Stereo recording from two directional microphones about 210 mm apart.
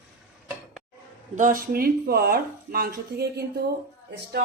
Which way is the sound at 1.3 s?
40° right (ahead or behind).